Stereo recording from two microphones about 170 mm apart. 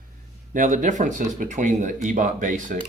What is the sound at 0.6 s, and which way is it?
Speech, 45° right (ahead or behind).